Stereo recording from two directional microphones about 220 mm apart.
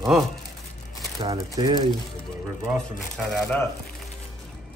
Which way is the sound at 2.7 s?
Centre (ahead or behind).